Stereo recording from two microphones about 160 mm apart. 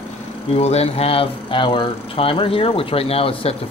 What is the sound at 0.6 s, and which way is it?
Speech, 40° left (ahead or behind).